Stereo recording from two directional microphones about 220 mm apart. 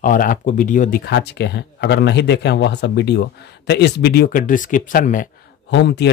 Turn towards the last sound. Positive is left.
turn(degrees=50)  # may be behind; listen again after turning